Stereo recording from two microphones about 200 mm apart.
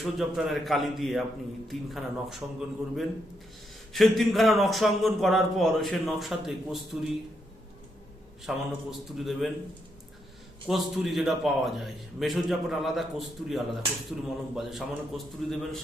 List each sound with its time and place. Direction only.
0.0 s a man's voice: centre (ahead or behind)
8.4 s a man's voice: centre (ahead or behind)
10.7 s a man's voice: centre (ahead or behind)